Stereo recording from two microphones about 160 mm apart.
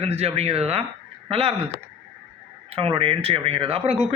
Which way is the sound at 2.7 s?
35° right (ahead or behind).